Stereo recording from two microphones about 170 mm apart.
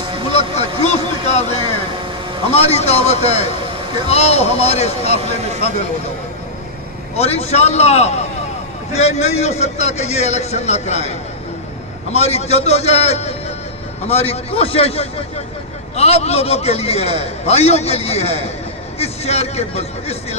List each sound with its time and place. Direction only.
0.6 s a sound: 40° left (ahead or behind)
2.5 s a man's voice: 40° left (ahead or behind)
7.2 s a man's voice: 40° left (ahead or behind)